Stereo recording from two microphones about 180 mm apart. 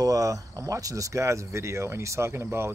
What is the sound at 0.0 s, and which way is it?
Cricket, 20° right (ahead or behind).